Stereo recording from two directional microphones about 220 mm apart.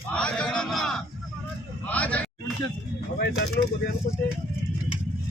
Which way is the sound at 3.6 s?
45° left (ahead or behind).